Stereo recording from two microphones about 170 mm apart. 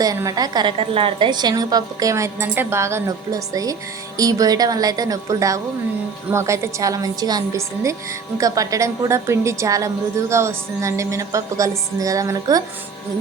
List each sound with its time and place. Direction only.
0.0 s a woman's voice: 20° right (ahead or behind)